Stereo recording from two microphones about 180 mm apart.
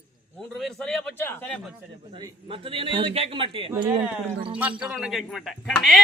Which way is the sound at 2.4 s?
30° right (ahead or behind).